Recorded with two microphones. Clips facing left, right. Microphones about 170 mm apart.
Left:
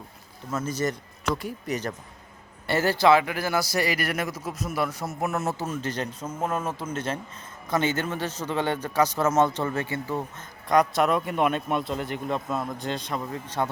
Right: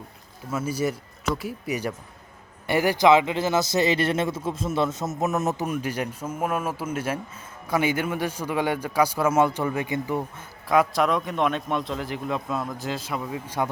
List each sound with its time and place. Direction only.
0.5 s a man's voice: 10° right (ahead or behind)